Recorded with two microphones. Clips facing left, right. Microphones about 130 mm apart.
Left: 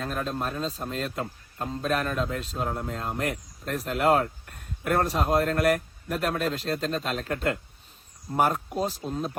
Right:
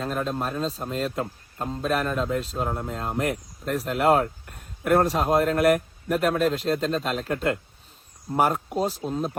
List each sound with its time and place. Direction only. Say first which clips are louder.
0.1 s speech: right 3 dB; 40° right (ahead or behind)
0.3 s speech: right 2 dB; centre (ahead or behind)
4.0 s a sound: right 2 dB; centre (ahead or behind)
4.9 s speech: right 4 dB; centre (ahead or behind)
5.5 s a man's voice: right 4 dB; 50° right (ahead or behind)
6.1 s speech: right 5 dB; centre (ahead or behind)